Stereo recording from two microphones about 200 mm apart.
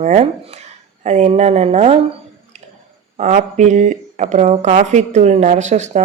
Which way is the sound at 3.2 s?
35° right (ahead or behind).